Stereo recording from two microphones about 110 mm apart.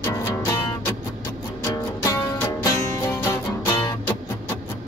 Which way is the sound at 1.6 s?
30° left (ahead or behind).